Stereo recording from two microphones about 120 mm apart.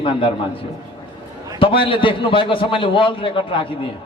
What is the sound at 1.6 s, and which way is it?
A man's voice, 45° left (ahead or behind).